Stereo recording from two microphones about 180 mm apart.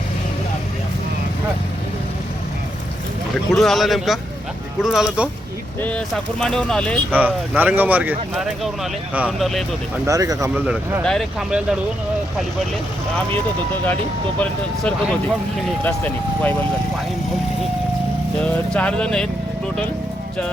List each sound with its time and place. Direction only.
3.3 s speech: centre (ahead or behind)
6.4 s speech: 5° left (ahead or behind)
7.1 s speech: 10° right (ahead or behind)
10.1 s speech: 20° right (ahead or behind)
10.5 s speech: 10° right (ahead or behind)
14.8 s speech: 5° left (ahead or behind)
18.4 s speech: 5° left (ahead or behind)